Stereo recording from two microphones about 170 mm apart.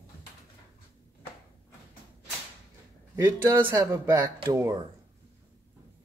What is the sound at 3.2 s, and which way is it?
Speech, 15° right (ahead or behind).